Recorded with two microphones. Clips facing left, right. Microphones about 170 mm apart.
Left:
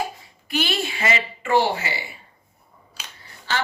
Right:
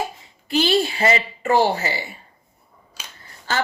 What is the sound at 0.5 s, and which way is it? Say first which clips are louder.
Speech: right 6 dB; 30° right (ahead or behind).